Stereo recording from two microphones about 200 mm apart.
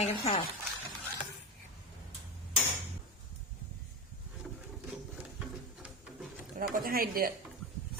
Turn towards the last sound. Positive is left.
turn(degrees=-45)  # may be behind; listen again after turning